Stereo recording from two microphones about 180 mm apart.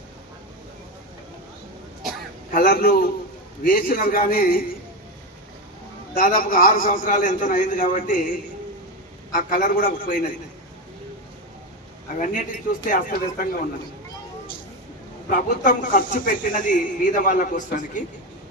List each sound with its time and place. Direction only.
2.5 s a woman's voice: 45° left (ahead or behind)
6.1 s a woman's voice: 50° left (ahead or behind)
12.2 s a woman's voice: 45° left (ahead or behind)
15.3 s a woman's voice: 45° left (ahead or behind)